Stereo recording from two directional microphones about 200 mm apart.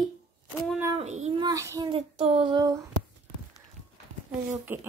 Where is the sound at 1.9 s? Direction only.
30° right (ahead or behind).